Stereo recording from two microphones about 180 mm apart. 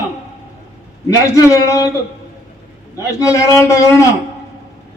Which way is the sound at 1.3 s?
15° left (ahead or behind).